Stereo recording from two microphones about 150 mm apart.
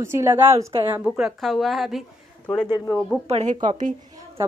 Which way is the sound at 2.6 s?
25° left (ahead or behind).